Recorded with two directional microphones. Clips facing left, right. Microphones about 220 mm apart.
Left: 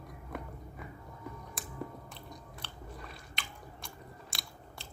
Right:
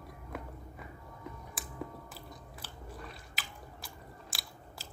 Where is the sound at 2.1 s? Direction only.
5° right (ahead or behind).